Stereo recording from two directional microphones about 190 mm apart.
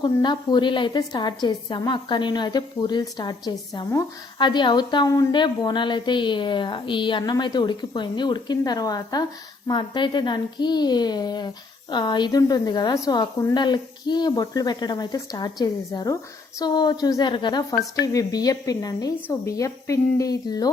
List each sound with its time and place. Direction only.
0.0 s a woman's voice: 25° left (ahead or behind)